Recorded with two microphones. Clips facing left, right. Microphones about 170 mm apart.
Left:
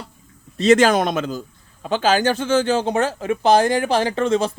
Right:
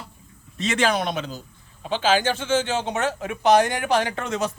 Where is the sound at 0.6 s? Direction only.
40° left (ahead or behind).